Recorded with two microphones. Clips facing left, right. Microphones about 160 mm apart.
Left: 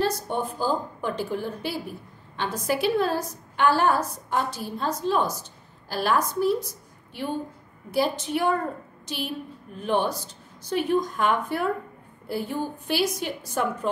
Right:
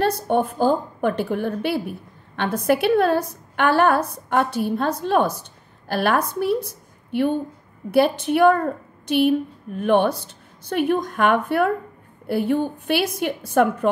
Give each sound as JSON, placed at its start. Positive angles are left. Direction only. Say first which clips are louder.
{"t": 0.0, "sound": "a woman's voice", "louder": "right 6 dB", "side_deg": -60}